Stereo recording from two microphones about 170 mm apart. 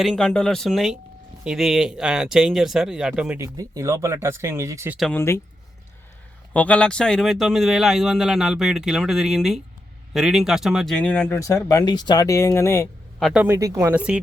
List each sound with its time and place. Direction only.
0.0 s speech: 5° left (ahead or behind); by 4.9 s 15° right (ahead or behind)
5.1 s speech: 15° left (ahead or behind)
6.5 s speech: 10° left (ahead or behind)
11.3 s speech: 20° left (ahead or behind)
13.1 s speech: centre (ahead or behind)
13.4 s speech: 15° right (ahead or behind)